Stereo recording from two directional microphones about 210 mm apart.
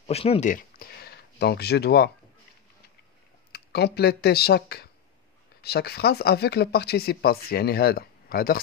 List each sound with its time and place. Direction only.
0.0 s speech: 30° left (ahead or behind); by 2.0 s 50° left (ahead or behind)
3.5 s speech: 50° left (ahead or behind)